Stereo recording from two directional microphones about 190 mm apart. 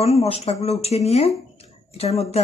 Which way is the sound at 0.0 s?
35° left (ahead or behind).